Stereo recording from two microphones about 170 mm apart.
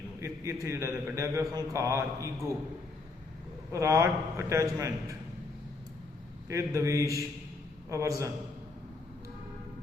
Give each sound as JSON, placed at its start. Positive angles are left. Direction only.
{"t": 0.2, "sound": "a man's voice", "side_deg": -15}
{"t": 3.7, "sound": "a man's voice", "side_deg": -20}
{"t": 6.5, "sound": "a man's voice", "side_deg": -15}